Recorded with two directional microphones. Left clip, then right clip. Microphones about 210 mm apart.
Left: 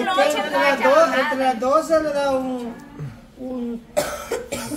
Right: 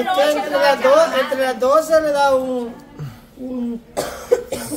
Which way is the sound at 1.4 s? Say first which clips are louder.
Right 5 dB; 50° right (ahead or behind).